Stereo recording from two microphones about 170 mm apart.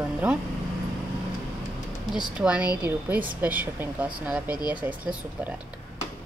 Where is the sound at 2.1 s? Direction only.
5° right (ahead or behind).